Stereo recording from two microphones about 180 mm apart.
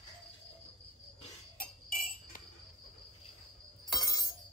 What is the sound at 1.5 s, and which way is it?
Tambourine, 50° left (ahead or behind).